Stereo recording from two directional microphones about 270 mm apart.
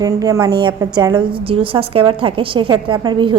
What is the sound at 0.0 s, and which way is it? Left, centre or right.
A woman's voice, centre.